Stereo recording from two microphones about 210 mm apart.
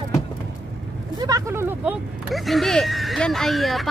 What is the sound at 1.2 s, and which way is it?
Speech, 15° right (ahead or behind).